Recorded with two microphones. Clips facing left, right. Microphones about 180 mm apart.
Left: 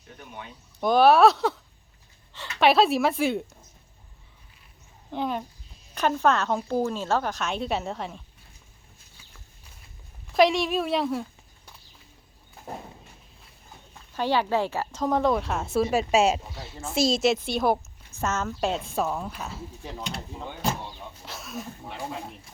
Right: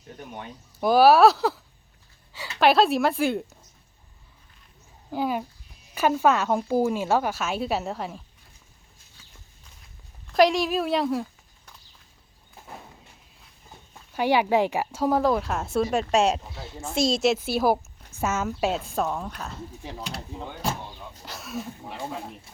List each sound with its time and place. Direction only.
0.8 s a woman's voice: 5° right (ahead or behind)
5.1 s speech: 5° right (ahead or behind)
9.6 s a sound: 5° left (ahead or behind)
14.1 s speech: 10° right (ahead or behind)